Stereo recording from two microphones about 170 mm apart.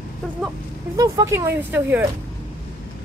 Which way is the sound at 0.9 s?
20° right (ahead or behind).